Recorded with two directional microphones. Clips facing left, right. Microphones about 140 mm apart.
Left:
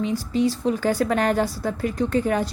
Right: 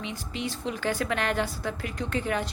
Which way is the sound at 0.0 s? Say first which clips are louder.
Left 12 dB; 35° left (ahead or behind).